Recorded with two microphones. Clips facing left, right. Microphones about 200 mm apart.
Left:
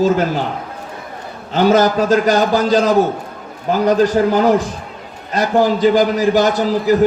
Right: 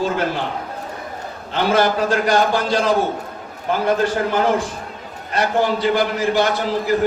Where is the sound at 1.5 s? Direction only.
40° left (ahead or behind).